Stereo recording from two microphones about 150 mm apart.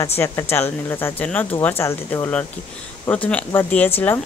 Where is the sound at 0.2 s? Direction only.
15° left (ahead or behind).